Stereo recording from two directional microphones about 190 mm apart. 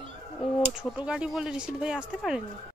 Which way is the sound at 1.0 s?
5° right (ahead or behind).